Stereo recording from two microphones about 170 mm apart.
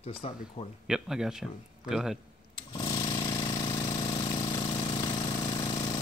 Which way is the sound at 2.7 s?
25° left (ahead or behind).